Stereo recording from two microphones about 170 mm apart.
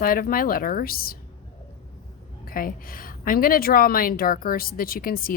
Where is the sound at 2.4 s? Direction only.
55° left (ahead or behind).